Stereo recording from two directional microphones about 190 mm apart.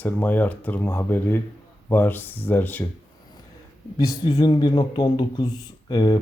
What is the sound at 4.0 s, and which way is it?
A man's voice, 20° left (ahead or behind).